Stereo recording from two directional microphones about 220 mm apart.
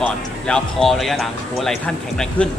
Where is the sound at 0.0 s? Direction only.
5° left (ahead or behind).